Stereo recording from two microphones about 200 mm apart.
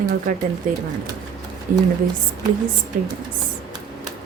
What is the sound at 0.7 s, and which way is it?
Speech, 40° right (ahead or behind).